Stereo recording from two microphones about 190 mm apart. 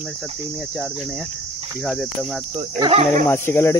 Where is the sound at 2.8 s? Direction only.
30° right (ahead or behind).